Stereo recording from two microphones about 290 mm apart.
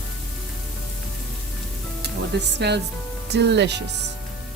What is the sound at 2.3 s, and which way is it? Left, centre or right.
Speech, right.